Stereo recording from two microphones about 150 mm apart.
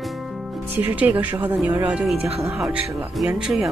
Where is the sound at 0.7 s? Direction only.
10° right (ahead or behind).